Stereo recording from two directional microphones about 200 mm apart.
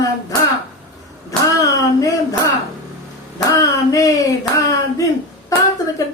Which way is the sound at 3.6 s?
15° left (ahead or behind).